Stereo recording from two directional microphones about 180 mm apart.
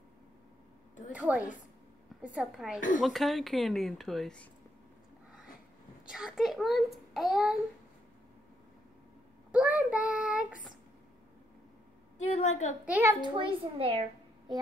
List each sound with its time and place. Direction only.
1.1 s a child's voice: 5° right (ahead or behind)
6.0 s a child's voice: 5° right (ahead or behind)
9.5 s child singing: 5° right (ahead or behind)
12.3 s a woman's voice: 40° left (ahead or behind)
12.8 s a child's voice: 10° right (ahead or behind)
13.2 s a child's voice: 30° right (ahead or behind)